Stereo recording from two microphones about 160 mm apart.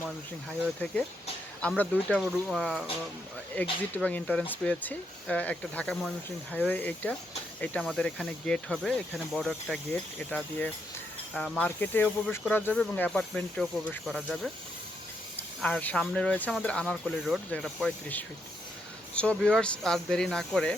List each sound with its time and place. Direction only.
1.6 s speech: 5° left (ahead or behind)
15.4 s speech: 10° left (ahead or behind)